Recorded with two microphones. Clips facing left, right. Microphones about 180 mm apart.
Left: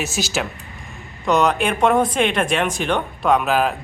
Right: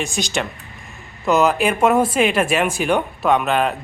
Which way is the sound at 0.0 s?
5° left (ahead or behind).